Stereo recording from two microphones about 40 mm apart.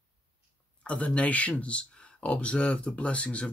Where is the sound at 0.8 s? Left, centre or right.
Left.